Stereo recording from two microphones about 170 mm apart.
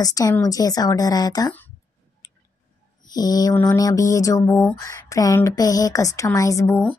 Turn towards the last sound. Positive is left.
turn(degrees=10)  # may be behind; listen again after turning